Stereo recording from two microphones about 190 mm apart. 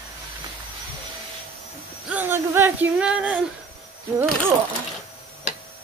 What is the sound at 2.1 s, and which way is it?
Speech, 10° right (ahead or behind).